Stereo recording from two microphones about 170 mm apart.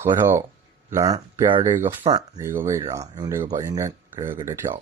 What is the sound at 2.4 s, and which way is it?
Speech, 15° right (ahead or behind).